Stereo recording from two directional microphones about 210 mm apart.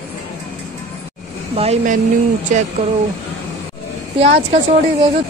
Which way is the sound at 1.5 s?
30° right (ahead or behind).